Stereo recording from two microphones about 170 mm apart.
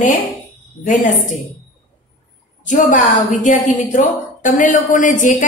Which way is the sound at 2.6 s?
45° left (ahead or behind).